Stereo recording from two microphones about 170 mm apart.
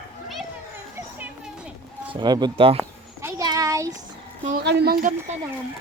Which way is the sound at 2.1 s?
25° right (ahead or behind).